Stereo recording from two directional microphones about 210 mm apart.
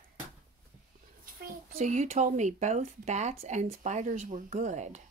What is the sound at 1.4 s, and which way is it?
Speech, 35° right (ahead or behind).